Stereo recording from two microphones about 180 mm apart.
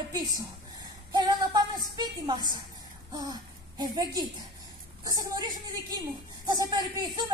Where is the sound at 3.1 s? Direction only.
20° right (ahead or behind).